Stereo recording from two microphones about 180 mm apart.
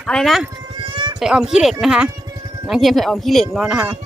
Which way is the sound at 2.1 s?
20° right (ahead or behind).